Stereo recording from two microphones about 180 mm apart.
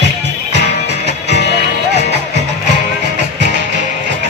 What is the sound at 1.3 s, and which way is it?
Music, 70° right (ahead or behind).